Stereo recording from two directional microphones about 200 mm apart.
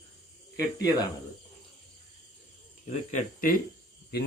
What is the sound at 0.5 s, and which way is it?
Speech, 15° left (ahead or behind).